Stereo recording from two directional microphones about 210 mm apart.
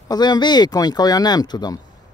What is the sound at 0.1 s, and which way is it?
Speech, 20° left (ahead or behind).